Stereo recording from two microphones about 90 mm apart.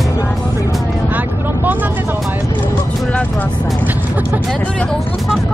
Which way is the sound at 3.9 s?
20° right (ahead or behind).